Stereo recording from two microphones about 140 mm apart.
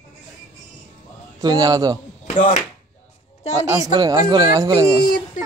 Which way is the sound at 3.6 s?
25° right (ahead or behind).